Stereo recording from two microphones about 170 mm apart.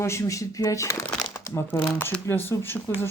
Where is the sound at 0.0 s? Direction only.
15° left (ahead or behind).